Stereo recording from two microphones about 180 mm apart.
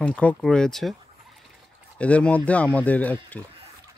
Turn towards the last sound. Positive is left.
turn(degrees=10)  # may be behind; listen again after turning